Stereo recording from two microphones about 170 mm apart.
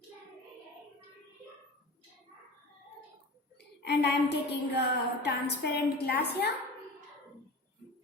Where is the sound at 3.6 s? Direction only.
85° left.